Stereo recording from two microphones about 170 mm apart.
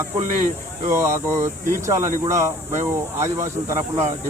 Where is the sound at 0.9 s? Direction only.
15° right (ahead or behind).